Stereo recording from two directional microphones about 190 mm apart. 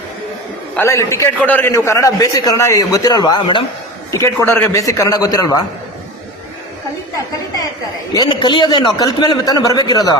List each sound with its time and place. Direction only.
0.8 s a man's voice: 15° left (ahead or behind)
8.1 s speech: 20° left (ahead or behind)